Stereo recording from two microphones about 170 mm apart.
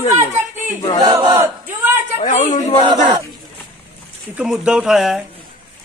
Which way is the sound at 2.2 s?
45° left (ahead or behind).